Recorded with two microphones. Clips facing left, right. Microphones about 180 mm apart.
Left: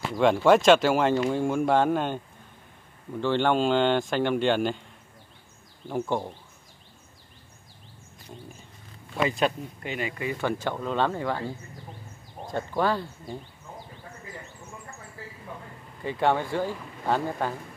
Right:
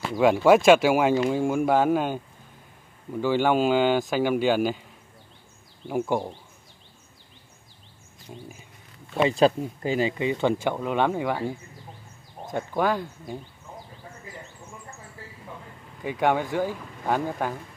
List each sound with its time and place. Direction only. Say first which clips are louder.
0.1 s speech: right 2 dB; 5° right (ahead or behind)
5.9 s speech: right 3 dB; 10° right (ahead or behind)
8.3 s a sound: right 2 dB; 5° right (ahead or behind)
9.1 s speech: right 5 dB; 30° right (ahead or behind); by 13.4 s 15° right (ahead or behind)
16.0 s speech: right 1 dB; 15° right (ahead or behind)